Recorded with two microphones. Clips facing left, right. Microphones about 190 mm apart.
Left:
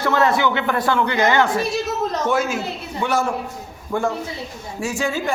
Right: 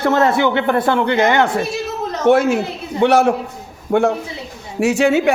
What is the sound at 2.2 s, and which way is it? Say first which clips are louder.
Speech: right 12 dB; 60° right (ahead or behind).